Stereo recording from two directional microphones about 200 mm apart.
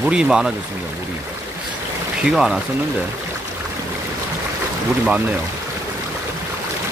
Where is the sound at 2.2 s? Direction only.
Centre (ahead or behind).